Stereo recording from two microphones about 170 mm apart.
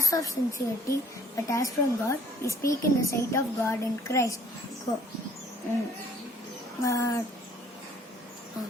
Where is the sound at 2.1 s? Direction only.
20° left (ahead or behind).